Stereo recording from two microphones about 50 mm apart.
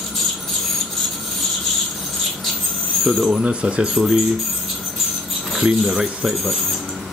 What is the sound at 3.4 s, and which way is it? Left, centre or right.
Speech, right.